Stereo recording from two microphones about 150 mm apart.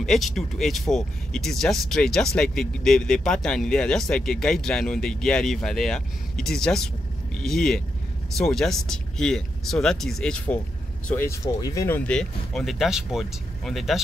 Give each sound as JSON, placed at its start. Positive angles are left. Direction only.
{"t": 0.0, "sound": "speech", "side_deg": 0}
{"t": 12.0, "sound": "speech", "side_deg": 5}